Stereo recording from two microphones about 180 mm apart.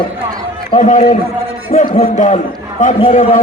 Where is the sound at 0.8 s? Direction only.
45° left (ahead or behind).